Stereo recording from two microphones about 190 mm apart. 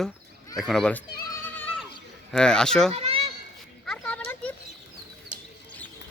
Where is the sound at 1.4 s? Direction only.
10° left (ahead or behind).